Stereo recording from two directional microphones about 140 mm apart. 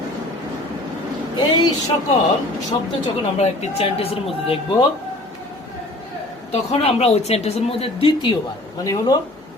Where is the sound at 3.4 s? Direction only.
45° left (ahead or behind).